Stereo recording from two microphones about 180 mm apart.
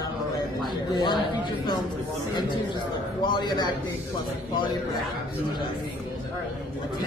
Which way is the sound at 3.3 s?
25° left (ahead or behind).